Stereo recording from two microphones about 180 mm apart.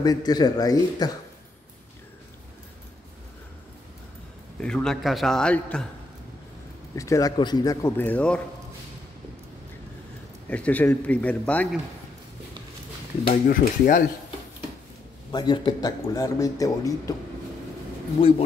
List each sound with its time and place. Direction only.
0.0 s speech: 20° left (ahead or behind)
4.6 s a man's voice: 5° left (ahead or behind)
7.0 s speech: 20° left (ahead or behind)
10.5 s speech: 10° left (ahead or behind)
13.2 s speech: 50° left (ahead or behind)
15.3 s speech: 25° left (ahead or behind)